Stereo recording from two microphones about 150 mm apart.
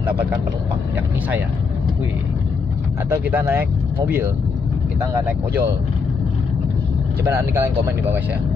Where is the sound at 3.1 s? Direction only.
15° right (ahead or behind).